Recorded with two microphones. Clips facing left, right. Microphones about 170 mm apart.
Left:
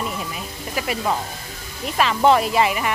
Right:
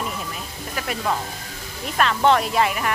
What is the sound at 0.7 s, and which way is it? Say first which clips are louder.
Speech: left 2 dB; 5° left (ahead or behind).